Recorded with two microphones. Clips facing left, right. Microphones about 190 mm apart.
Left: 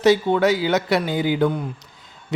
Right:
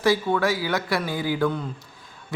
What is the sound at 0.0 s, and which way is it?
A man's voice, 25° left (ahead or behind).